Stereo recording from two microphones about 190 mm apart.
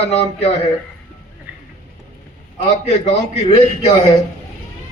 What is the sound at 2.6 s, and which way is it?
Speech, 35° left (ahead or behind).